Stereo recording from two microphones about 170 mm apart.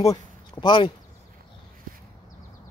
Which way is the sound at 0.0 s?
25° left (ahead or behind).